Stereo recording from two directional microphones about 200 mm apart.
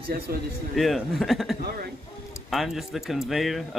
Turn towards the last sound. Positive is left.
turn(degrees=0)  # may be behind; listen again after turning